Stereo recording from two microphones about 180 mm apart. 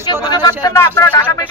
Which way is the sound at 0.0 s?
20° left (ahead or behind).